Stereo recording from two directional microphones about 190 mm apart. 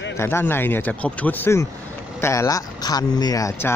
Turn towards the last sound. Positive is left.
turn(degrees=15)  # may be behind; listen again after turning